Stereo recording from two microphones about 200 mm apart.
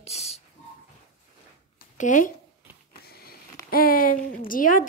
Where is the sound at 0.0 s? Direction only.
30° left (ahead or behind).